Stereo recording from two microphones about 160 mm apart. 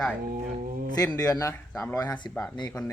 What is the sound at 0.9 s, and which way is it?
Speech, 25° left (ahead or behind).